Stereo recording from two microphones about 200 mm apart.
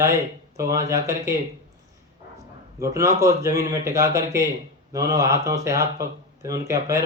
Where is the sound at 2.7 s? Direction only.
15° right (ahead or behind).